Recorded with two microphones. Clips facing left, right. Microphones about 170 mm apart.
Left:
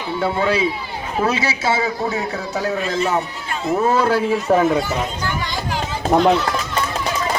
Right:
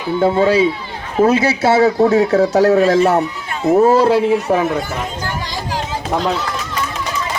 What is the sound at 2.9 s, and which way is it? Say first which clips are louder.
Speech: right 7 dB; 65° right (ahead or behind).